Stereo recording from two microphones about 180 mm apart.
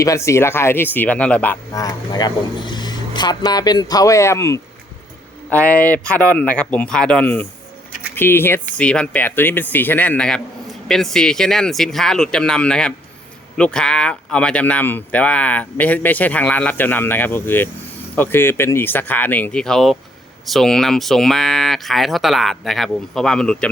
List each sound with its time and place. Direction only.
0.0 s speech: 15° left (ahead or behind)